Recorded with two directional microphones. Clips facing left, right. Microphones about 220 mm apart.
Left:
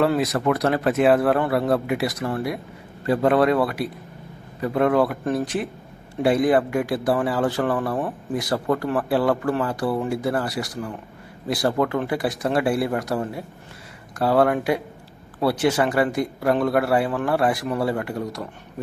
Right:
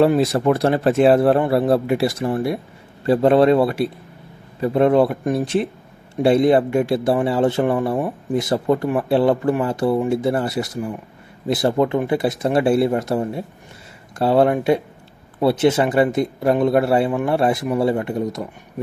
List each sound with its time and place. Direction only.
0.2 s speech: 30° right (ahead or behind)